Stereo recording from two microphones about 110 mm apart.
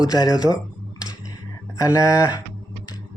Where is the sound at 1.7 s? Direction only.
30° left (ahead or behind).